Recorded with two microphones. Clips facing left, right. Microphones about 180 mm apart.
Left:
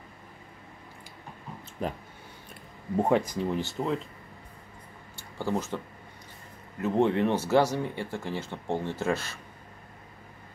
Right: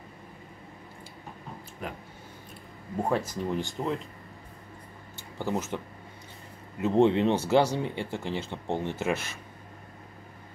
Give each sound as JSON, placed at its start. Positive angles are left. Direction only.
{"t": 1.8, "sound": "speech", "side_deg": 35}
{"t": 3.0, "sound": "speech", "side_deg": 15}
{"t": 3.8, "sound": "speech", "side_deg": 0}
{"t": 5.4, "sound": "speech", "side_deg": -20}
{"t": 6.8, "sound": "speech", "side_deg": -25}